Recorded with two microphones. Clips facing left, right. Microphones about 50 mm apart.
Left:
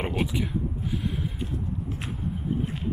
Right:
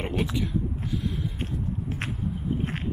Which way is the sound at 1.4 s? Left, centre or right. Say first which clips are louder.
Even; right.